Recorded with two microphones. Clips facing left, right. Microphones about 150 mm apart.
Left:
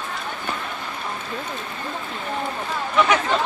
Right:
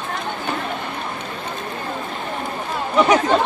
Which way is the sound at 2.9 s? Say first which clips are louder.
Right 4 dB; 40° right (ahead or behind).